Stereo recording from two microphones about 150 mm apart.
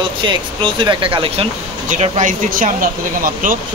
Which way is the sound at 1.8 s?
55° right (ahead or behind).